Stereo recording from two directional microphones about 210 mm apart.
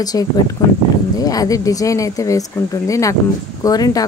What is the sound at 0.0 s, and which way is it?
Speech, 20° left (ahead or behind).